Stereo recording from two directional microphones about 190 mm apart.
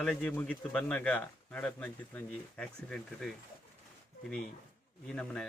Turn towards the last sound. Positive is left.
turn(degrees=5)  # may be behind; listen again after turning